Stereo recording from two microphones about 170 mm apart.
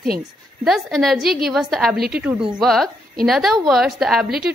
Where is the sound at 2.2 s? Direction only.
Centre (ahead or behind).